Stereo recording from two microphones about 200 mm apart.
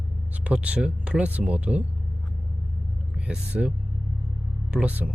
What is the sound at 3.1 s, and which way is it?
Speech, 5° right (ahead or behind).